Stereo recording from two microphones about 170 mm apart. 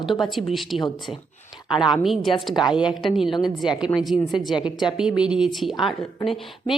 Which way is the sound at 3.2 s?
25° left (ahead or behind).